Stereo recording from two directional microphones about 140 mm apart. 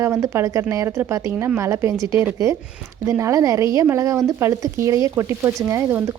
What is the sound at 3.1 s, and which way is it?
Speech, 20° right (ahead or behind).